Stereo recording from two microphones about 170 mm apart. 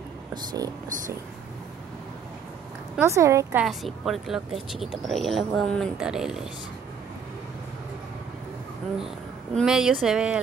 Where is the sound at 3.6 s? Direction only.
Centre (ahead or behind).